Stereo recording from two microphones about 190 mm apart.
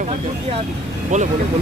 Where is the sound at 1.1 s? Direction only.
40° right (ahead or behind).